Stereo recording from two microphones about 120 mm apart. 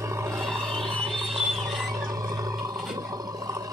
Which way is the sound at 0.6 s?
45° right (ahead or behind).